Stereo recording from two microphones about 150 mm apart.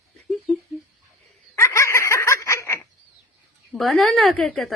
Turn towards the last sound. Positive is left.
turn(degrees=0)  # may be behind; listen again after turning